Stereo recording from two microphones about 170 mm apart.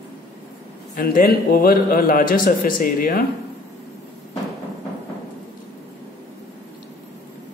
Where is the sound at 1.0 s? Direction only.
60° left (ahead or behind).